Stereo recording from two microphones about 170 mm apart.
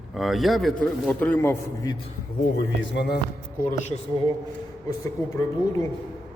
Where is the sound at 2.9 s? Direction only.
90° left.